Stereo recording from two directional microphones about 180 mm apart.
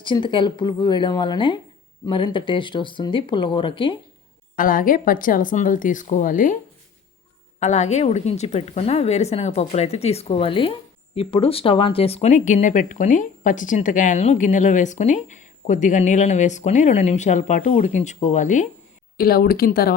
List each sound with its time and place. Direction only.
0.0 s speech: 25° left (ahead or behind)
4.5 s speech: 50° left (ahead or behind)
7.6 s a woman's voice: 40° left (ahead or behind)
19.1 s speech: 55° left (ahead or behind)